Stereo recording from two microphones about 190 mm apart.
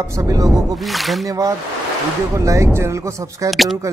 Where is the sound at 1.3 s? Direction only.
20° right (ahead or behind).